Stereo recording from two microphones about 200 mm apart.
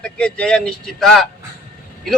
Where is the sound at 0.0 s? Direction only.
5° left (ahead or behind).